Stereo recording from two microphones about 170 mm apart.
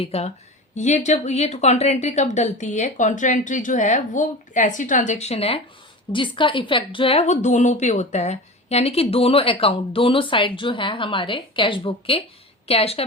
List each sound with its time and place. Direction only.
0.0 s a woman's voice: 40° left (ahead or behind)